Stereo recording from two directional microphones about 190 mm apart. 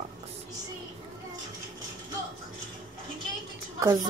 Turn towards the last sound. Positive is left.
turn(degrees=-20)  # may be behind; listen again after turning